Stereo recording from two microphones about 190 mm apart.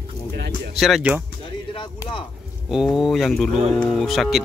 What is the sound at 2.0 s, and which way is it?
Speech, 25° left (ahead or behind).